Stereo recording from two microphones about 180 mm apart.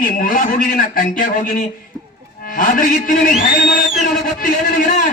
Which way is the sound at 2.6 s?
50° left (ahead or behind).